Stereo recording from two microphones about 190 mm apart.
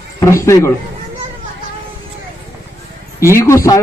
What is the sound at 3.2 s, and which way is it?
Speech, 15° left (ahead or behind).